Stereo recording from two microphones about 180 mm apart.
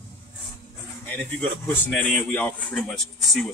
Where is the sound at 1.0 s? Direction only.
10° left (ahead or behind).